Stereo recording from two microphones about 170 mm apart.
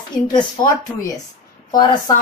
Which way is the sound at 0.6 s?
25° left (ahead or behind).